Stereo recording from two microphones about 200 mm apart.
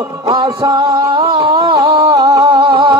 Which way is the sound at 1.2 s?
20° right (ahead or behind).